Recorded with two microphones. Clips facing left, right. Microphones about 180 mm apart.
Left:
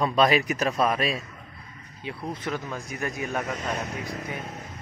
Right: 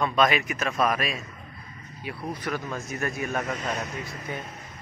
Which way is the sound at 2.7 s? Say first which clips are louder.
Right 1 dB; 15° left (ahead or behind).